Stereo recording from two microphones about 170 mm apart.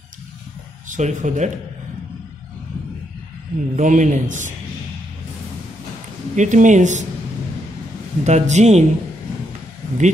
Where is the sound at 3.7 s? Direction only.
45° right (ahead or behind).